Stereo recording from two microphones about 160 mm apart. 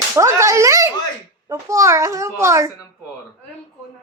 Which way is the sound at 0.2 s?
20° right (ahead or behind).